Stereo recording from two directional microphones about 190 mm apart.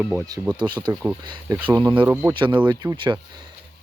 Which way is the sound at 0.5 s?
25° right (ahead or behind).